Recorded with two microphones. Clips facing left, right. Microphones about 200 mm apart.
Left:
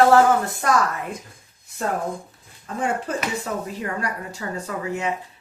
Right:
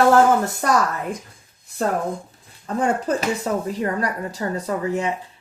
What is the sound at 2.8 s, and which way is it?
Speech, 35° right (ahead or behind).